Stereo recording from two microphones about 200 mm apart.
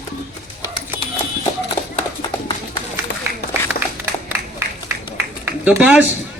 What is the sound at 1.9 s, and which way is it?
Run, 25° left (ahead or behind).